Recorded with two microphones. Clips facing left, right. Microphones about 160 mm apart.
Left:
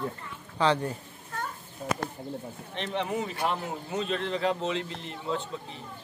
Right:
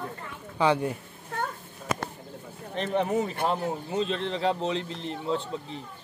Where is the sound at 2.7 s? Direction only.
40° right (ahead or behind).